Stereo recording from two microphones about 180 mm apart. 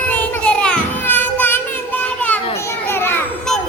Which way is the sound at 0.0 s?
10° left (ahead or behind).